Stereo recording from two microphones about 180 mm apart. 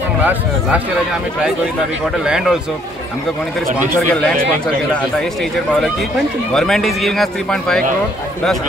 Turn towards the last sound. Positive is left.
turn(degrees=5)  # may be behind; listen again after turning